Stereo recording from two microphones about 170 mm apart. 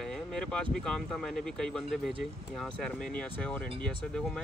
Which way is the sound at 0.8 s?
5° left (ahead or behind).